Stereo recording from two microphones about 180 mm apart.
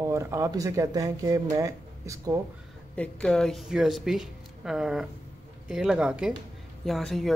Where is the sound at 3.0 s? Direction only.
5° left (ahead or behind).